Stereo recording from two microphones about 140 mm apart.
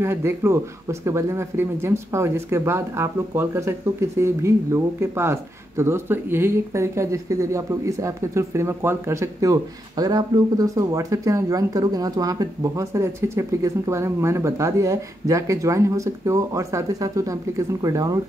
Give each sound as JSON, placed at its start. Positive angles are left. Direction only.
{"t": 0.0, "sound": "speech", "side_deg": -15}